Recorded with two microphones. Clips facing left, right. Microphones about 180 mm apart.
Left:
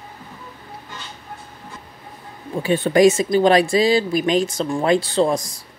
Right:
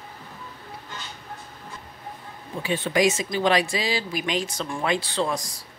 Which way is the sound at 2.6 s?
50° left (ahead or behind).